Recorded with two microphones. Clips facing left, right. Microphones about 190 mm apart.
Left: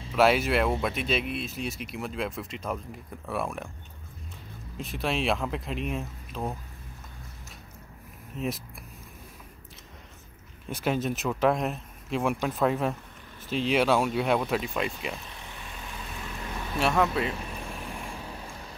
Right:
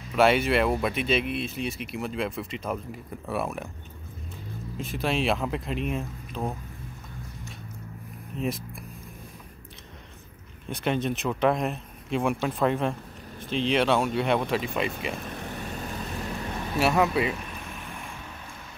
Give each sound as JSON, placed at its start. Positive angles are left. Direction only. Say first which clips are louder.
{"t": 0.1, "sound": "speech", "louder": "right 1 dB", "side_deg": 0}
{"t": 4.7, "sound": "speech", "louder": "right 2 dB", "side_deg": 0}
{"t": 8.4, "sound": "speech", "louder": "right 2 dB", "side_deg": 0}
{"t": 10.7, "sound": "speech", "louder": "right 1 dB", "side_deg": 5}
{"t": 15.1, "sound": "vehicle", "louder": "right 8 dB", "side_deg": -50}
{"t": 16.7, "sound": "speech", "louder": "right 2 dB", "side_deg": -5}
{"t": 18.0, "sound": "vehicle", "louder": "left 2 dB", "side_deg": 35}